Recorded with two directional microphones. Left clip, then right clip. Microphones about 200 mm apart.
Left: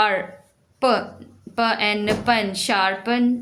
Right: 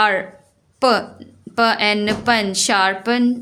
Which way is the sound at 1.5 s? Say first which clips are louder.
Right 4 dB; 40° right (ahead or behind).